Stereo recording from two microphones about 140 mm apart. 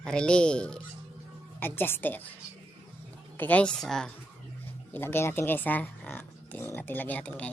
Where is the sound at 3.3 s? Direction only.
10° left (ahead or behind).